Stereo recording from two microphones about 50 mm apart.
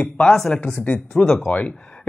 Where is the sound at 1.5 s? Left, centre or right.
Left.